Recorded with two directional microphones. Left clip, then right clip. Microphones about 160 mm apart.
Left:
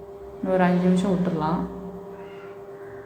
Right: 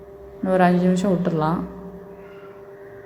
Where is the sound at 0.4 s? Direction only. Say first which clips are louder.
Right 4 dB; 30° right (ahead or behind).